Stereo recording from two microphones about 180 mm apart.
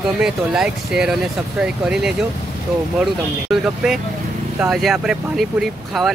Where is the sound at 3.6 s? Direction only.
5° right (ahead or behind).